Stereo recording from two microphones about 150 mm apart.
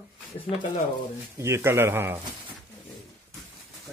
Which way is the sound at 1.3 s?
20° right (ahead or behind).